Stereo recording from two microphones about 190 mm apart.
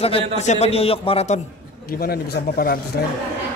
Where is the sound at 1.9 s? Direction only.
50° left (ahead or behind).